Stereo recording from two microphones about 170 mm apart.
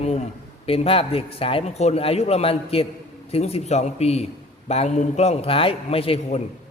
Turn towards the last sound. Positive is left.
turn(degrees=35)  # may be behind; listen again after turning